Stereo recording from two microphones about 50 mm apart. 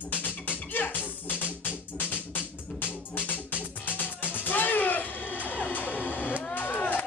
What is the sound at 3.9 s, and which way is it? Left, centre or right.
Music, left.